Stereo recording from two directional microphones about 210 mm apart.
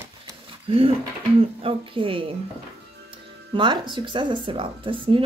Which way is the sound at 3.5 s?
20° right (ahead or behind).